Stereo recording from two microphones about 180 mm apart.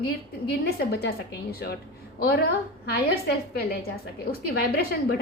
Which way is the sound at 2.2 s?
60° left (ahead or behind).